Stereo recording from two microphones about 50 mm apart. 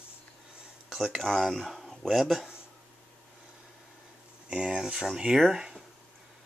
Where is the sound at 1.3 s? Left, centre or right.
Centre.